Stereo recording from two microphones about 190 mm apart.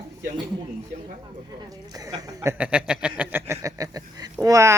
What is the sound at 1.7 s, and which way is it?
Speech, 20° right (ahead or behind).